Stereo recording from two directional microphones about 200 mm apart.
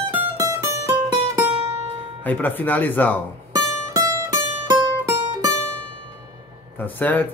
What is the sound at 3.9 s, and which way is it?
Music, 15° right (ahead or behind).